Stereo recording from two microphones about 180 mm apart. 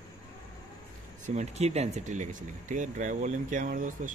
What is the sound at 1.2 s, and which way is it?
Speech, 40° right (ahead or behind).